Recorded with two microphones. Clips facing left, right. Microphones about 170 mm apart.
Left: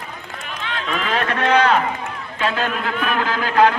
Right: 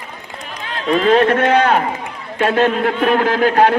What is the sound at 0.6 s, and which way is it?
A man's voice, 40° right (ahead or behind).